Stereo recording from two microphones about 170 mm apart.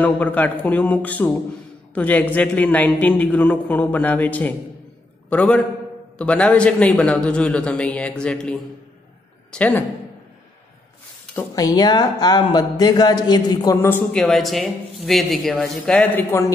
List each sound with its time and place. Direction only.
0.0 s a man's voice: 10° left (ahead or behind)
11.3 s speech: 20° left (ahead or behind)
13.7 s a man's voice: 10° left (ahead or behind)
14.2 s speech: centre (ahead or behind)
16.3 s a man's voice: 15° left (ahead or behind)